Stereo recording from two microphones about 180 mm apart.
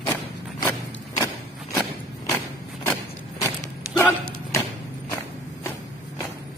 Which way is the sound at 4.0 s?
15° left (ahead or behind).